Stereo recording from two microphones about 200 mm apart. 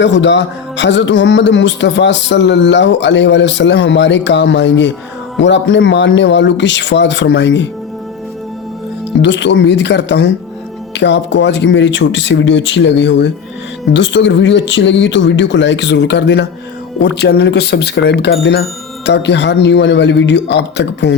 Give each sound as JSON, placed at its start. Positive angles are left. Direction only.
{"t": 0.0, "sound": "speech", "side_deg": 65}
{"t": 9.2, "sound": "speech", "side_deg": 60}